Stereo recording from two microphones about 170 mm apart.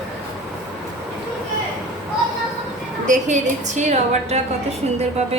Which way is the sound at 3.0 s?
45° right (ahead or behind).